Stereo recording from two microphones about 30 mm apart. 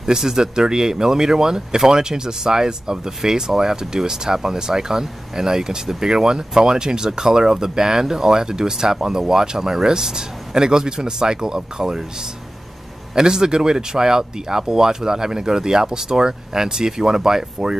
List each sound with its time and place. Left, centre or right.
0.0 s speech: centre
13.1 s speech: right